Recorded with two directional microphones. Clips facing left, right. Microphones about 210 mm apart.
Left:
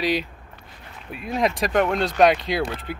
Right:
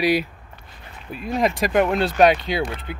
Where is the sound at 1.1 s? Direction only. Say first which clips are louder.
Right 2 dB; centre (ahead or behind).